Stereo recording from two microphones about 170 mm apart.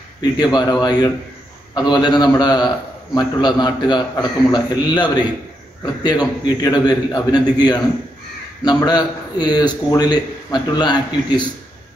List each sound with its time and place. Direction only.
0.2 s a man's voice: 25° left (ahead or behind)